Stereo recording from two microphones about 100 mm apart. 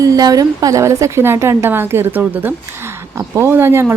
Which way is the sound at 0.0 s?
40° right (ahead or behind).